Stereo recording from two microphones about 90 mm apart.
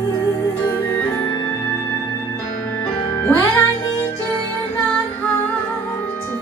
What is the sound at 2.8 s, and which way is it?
Music, 25° left (ahead or behind).